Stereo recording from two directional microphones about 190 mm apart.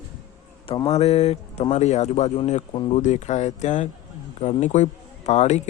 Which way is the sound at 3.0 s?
40° left (ahead or behind).